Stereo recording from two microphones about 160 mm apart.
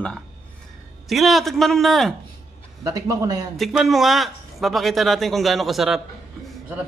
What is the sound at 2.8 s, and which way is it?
Speech, 20° right (ahead or behind).